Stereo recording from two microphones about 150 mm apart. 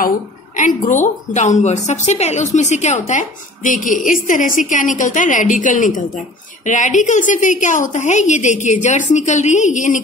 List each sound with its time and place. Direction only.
0.6 s a woman's voice: 55° left (ahead or behind)